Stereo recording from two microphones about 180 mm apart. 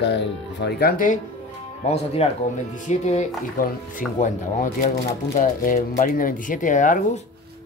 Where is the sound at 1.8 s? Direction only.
35° left (ahead or behind).